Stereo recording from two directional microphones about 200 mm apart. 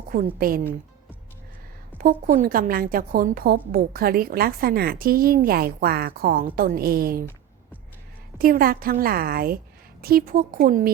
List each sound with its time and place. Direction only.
0.1 s a woman's voice: 45° right (ahead or behind)
2.0 s a woman's voice: 45° right (ahead or behind)
8.4 s a woman's voice: 45° right (ahead or behind)